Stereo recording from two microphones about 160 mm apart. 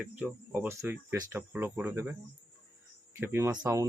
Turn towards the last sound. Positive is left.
turn(degrees=-20)  # may be behind; listen again after turning